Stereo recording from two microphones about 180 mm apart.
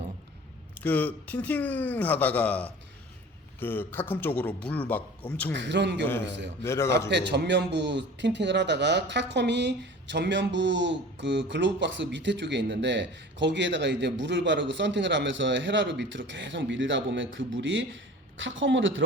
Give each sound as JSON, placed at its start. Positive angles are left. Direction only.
{"t": 0.8, "sound": "a man's voice", "side_deg": 10}
{"t": 5.5, "sound": "a man's voice", "side_deg": -75}
{"t": 6.6, "sound": "a man's voice", "side_deg": 15}
{"t": 7.1, "sound": "speech", "side_deg": -75}